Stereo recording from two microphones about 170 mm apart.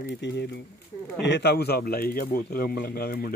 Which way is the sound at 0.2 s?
90° left.